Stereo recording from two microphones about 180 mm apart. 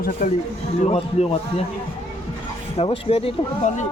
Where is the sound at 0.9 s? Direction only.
35° left (ahead or behind).